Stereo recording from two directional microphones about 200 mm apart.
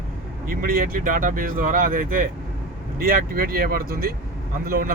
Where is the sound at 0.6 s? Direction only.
45° right (ahead or behind).